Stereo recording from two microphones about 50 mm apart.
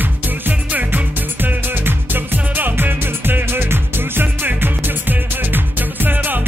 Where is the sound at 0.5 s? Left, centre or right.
Right.